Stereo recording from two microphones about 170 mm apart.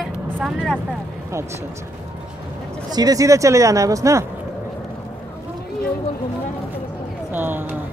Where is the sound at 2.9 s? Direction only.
20° right (ahead or behind).